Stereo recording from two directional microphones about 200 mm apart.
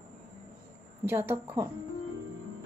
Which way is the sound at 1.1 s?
10° right (ahead or behind).